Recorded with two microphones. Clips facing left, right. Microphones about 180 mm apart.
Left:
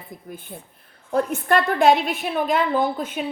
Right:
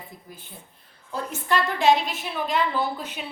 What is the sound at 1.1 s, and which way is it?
A woman's voice, 55° left (ahead or behind).